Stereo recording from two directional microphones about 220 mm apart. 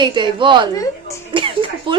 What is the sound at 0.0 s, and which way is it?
A woman's voice, 20° right (ahead or behind).